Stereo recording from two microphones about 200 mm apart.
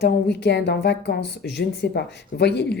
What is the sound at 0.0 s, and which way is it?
Speech, 60° left (ahead or behind).